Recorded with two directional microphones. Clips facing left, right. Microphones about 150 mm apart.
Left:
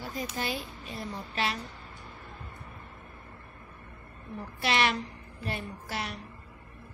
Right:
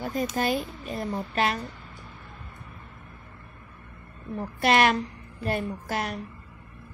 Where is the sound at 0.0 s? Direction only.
55° right (ahead or behind).